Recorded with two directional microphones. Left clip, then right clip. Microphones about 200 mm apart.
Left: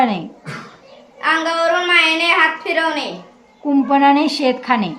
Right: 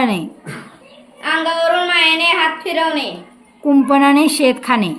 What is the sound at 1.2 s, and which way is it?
A woman's voice, 15° left (ahead or behind).